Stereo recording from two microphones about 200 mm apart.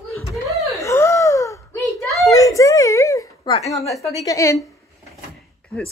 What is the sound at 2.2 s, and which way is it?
A woman's voice, 15° left (ahead or behind).